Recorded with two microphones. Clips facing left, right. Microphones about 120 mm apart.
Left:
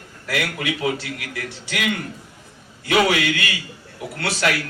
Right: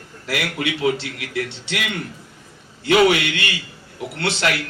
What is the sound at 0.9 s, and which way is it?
A man's voice, 25° right (ahead or behind).